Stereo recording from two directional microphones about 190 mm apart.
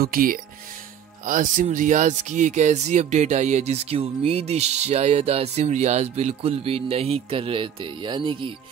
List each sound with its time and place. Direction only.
0.0 s speech: 50° right (ahead or behind); by 8.5 s 25° right (ahead or behind)